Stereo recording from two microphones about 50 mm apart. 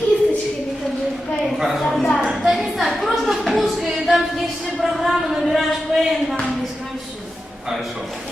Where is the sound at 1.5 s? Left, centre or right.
Centre.